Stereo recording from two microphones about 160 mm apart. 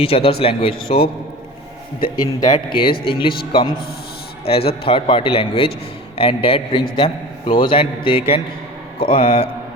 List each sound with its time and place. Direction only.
0.0 s a man's voice: 35° left (ahead or behind)
2.1 s a man's voice: 25° left (ahead or behind)